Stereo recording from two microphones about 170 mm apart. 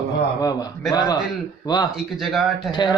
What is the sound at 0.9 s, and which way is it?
Speech, 20° left (ahead or behind).